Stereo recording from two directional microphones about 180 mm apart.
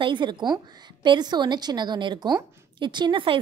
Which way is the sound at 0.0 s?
25° right (ahead or behind).